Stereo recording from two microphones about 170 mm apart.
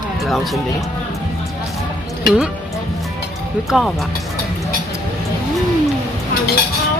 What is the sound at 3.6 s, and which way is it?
Speech, centre (ahead or behind).